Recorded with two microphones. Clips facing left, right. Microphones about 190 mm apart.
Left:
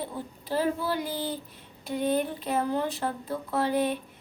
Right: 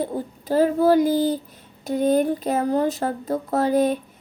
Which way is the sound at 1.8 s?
45° right (ahead or behind).